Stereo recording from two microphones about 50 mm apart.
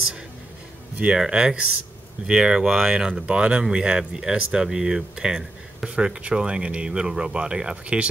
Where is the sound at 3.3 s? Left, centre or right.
Centre.